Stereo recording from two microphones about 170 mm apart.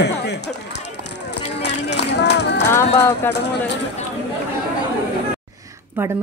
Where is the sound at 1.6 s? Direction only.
90° left.